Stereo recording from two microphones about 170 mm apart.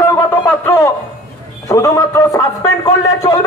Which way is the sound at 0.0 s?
15° left (ahead or behind).